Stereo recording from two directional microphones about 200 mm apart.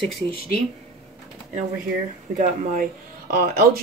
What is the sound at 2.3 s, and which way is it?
Speech, 40° right (ahead or behind).